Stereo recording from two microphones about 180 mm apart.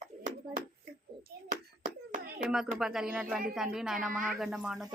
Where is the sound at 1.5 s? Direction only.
45° right (ahead or behind).